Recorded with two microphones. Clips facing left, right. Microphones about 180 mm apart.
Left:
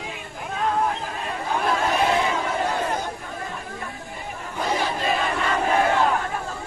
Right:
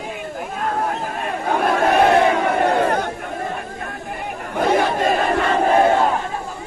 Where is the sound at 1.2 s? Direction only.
55° right (ahead or behind).